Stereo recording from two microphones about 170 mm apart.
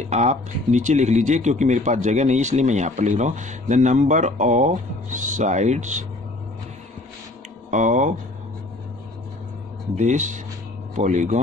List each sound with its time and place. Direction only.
0.1 s speech: 45° right (ahead or behind)
7.7 s speech: 45° right (ahead or behind)
9.9 s speech: 45° right (ahead or behind)